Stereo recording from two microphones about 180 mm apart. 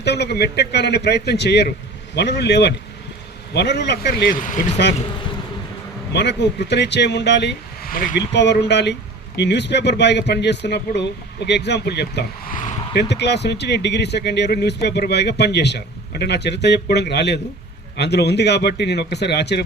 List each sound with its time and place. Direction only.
0.0 s speech: 70° left (ahead or behind); by 4.8 s 45° left (ahead or behind)
6.1 s speech: 70° left (ahead or behind); by 8.2 s 50° left (ahead or behind)
8.3 s speech: 70° left (ahead or behind)